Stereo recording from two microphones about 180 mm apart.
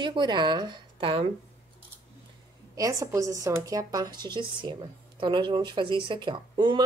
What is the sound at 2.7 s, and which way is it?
A woman's voice, 20° right (ahead or behind).